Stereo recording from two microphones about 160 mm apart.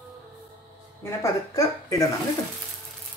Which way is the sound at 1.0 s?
20° left (ahead or behind).